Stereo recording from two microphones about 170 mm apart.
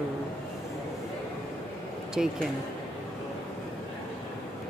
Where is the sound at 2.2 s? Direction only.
5° right (ahead or behind).